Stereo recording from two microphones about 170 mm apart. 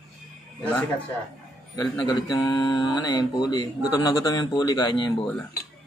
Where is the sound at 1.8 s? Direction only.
25° left (ahead or behind).